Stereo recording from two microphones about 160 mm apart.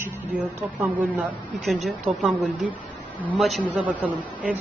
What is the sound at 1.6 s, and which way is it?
A woman's voice, centre (ahead or behind).